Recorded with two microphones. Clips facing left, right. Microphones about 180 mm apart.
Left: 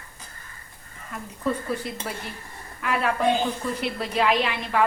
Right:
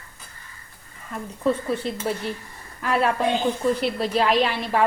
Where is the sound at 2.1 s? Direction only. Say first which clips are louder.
Right 7 dB; 30° right (ahead or behind).